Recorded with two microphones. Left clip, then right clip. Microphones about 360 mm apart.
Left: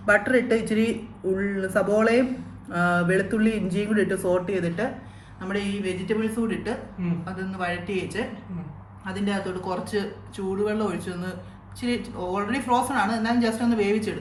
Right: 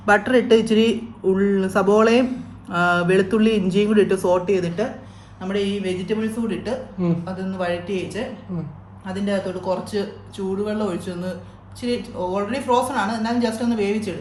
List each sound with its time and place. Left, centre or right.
0.0 s a man's voice: centre